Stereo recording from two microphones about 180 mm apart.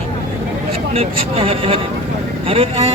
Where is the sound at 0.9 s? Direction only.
30° right (ahead or behind).